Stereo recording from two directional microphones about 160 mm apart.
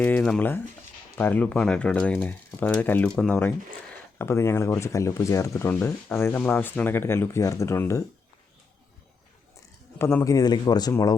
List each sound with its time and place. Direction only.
0.0 s speech: 5° left (ahead or behind)
10.0 s speech: 15° left (ahead or behind)